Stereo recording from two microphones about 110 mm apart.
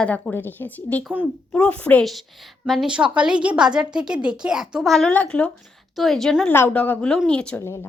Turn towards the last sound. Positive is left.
turn(degrees=10)  # may be behind; listen again after turning